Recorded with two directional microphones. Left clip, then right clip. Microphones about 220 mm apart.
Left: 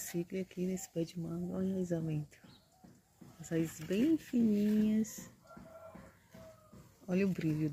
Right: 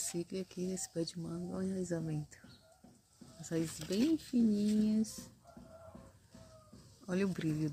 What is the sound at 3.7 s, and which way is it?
Speech, 45° right (ahead or behind).